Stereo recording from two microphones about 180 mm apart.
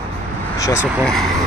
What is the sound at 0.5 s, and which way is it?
Speech, 20° left (ahead or behind).